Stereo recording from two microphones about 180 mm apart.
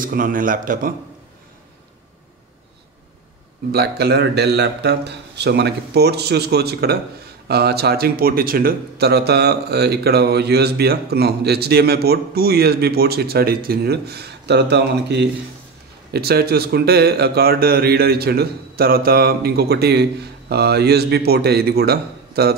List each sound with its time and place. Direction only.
0.0 s a man's voice: 50° right (ahead or behind)
3.7 s speech: 65° right (ahead or behind)